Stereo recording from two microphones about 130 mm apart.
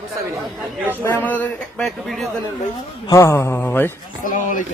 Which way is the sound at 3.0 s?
20° left (ahead or behind).